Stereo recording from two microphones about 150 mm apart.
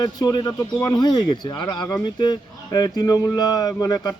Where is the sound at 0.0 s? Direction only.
25° left (ahead or behind).